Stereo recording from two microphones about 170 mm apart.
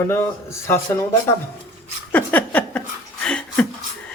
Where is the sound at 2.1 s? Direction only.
10° left (ahead or behind).